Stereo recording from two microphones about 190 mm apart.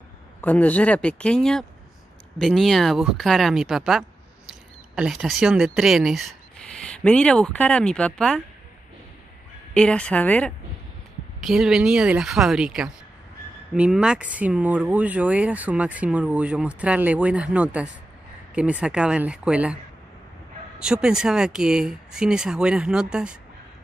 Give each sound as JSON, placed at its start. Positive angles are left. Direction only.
{"t": 0.4, "sound": "speech", "side_deg": 10}
{"t": 9.8, "sound": "speech", "side_deg": 5}
{"t": 11.4, "sound": "speech", "side_deg": -5}
{"t": 20.8, "sound": "speech", "side_deg": -5}